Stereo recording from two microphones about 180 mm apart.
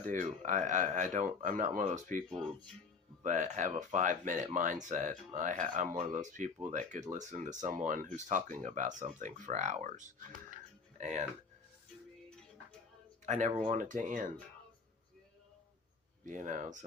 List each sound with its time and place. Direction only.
0.0 s speech: 45° right (ahead or behind)
3.2 s speech: 45° right (ahead or behind)
13.2 s speech: 40° right (ahead or behind)
16.2 s speech: 45° right (ahead or behind)